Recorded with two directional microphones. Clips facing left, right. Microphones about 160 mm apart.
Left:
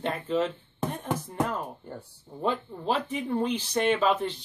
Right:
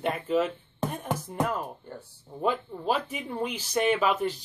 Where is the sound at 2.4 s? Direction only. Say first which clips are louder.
Right 1 dB; 10° right (ahead or behind).